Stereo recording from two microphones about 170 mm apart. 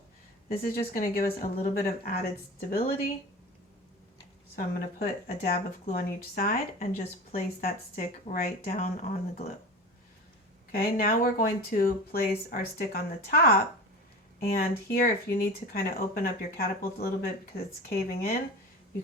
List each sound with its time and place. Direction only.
0.5 s speech: 60° left (ahead or behind)
4.5 s speech: 60° left (ahead or behind)
10.7 s speech: 60° left (ahead or behind)